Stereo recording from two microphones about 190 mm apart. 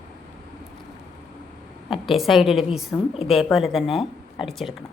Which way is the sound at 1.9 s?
Centre (ahead or behind).